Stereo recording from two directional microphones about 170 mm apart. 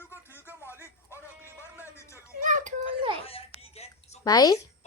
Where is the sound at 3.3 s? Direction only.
35° left (ahead or behind).